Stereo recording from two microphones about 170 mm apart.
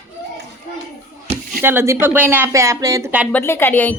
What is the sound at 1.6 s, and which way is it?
Speech, 15° right (ahead or behind).